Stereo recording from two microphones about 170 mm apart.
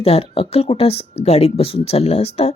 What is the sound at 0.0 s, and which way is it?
Speech, 35° left (ahead or behind).